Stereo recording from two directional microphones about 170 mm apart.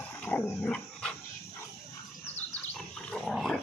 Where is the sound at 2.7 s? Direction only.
Centre (ahead or behind).